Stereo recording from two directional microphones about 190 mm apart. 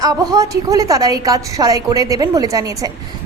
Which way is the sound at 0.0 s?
20° right (ahead or behind).